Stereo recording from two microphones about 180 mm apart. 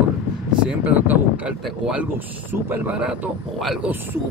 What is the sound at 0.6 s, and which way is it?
Speech, 10° right (ahead or behind).